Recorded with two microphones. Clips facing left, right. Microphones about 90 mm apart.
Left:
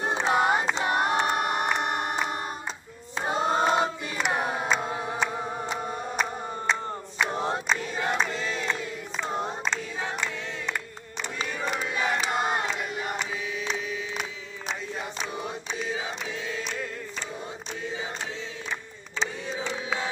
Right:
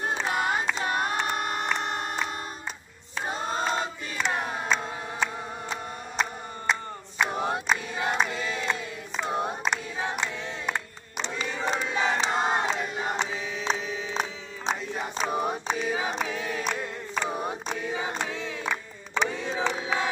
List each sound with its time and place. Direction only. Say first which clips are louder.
0.0 s singing: left 4 dB; 20° left (ahead or behind)
3.2 s choir: left 5 dB; 20° left (ahead or behind)
4.2 s a capella: left 2 dB; 10° left (ahead or behind)
6.7 s choir: right 1 dB; 5° right (ahead or behind)
11.6 s battle cry: right 2 dB; 25° right (ahead or behind)
12.3 s crowd: right 1 dB; 5° left (ahead or behind)
12.6 s battle cry: right 2 dB; 25° right (ahead or behind)
15.2 s choir: right 6 dB; 50° right (ahead or behind); by 17.7 s 70° right (ahead or behind)
18.2 s battle cry: right 4 dB; 60° right (ahead or behind)